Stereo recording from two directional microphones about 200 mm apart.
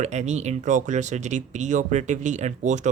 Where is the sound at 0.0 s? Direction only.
35° right (ahead or behind).